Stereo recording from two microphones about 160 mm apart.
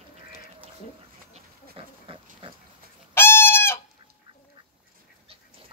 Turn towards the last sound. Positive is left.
turn(degrees=15)  # may be behind; listen again after turning